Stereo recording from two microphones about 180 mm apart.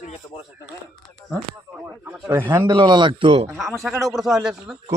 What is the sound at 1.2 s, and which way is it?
Speech, centre (ahead or behind).